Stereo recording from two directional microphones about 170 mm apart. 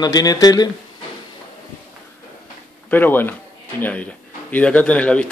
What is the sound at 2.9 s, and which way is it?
Speech, 10° left (ahead or behind).